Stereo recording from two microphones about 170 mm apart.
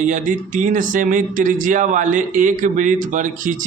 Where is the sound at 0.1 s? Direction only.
50° right (ahead or behind).